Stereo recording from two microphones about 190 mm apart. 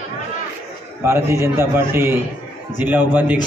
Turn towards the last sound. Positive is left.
turn(degrees=-10)  # may be behind; listen again after turning